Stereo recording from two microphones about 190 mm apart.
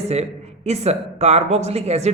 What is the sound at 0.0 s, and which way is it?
Speech, 35° right (ahead or behind).